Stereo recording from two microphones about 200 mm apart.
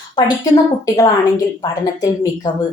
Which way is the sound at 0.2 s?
20° left (ahead or behind).